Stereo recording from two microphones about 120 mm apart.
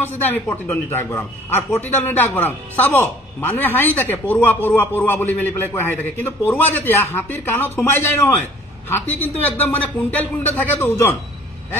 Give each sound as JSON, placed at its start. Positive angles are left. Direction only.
{"t": 0.0, "sound": "a man's voice", "side_deg": 15}